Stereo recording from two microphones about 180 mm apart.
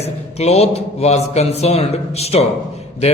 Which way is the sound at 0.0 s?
35° left (ahead or behind).